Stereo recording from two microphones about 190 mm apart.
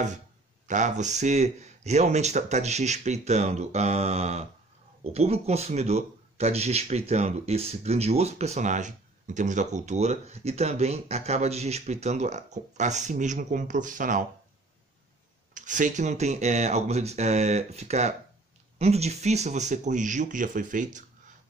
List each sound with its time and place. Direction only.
0.7 s speech: 40° right (ahead or behind)
15.5 s speech: 40° right (ahead or behind)